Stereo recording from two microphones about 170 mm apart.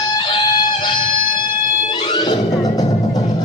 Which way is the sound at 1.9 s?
25° left (ahead or behind).